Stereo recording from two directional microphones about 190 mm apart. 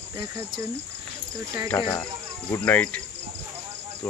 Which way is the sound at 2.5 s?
10° left (ahead or behind).